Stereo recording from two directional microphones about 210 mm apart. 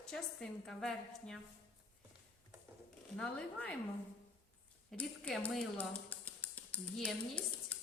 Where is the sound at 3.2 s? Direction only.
5° left (ahead or behind).